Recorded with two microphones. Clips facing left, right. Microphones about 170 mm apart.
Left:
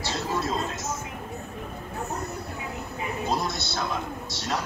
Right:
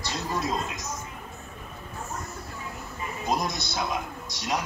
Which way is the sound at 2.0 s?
65° left (ahead or behind).